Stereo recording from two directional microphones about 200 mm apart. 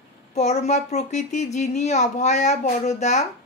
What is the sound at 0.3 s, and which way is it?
Speech, 35° left (ahead or behind).